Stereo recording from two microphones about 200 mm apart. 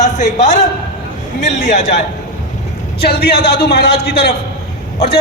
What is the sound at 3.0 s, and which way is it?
A man's voice, 50° left (ahead or behind).